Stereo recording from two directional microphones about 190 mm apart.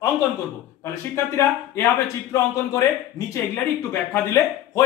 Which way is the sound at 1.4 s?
15° left (ahead or behind).